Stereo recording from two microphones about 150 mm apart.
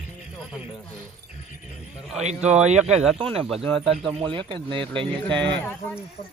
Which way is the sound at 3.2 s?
40° right (ahead or behind).